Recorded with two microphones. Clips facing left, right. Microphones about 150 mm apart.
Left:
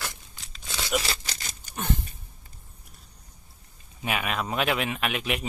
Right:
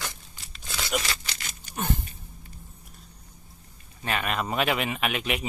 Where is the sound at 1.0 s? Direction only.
35° left (ahead or behind).